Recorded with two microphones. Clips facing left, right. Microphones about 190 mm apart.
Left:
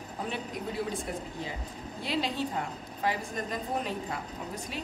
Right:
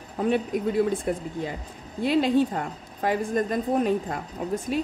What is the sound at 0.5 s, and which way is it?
Speech, 50° right (ahead or behind).